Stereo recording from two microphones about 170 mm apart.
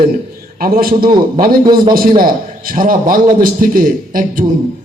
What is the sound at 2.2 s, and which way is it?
A man's voice, 55° right (ahead or behind).